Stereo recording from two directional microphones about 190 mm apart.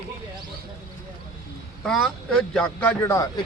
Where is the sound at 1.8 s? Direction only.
5° left (ahead or behind).